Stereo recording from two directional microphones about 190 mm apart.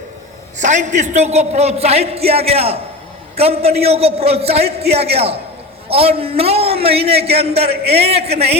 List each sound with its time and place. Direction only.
0.6 s a man's voice: 40° right (ahead or behind)